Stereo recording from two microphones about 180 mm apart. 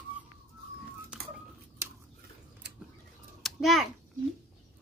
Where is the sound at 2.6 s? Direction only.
70° right (ahead or behind).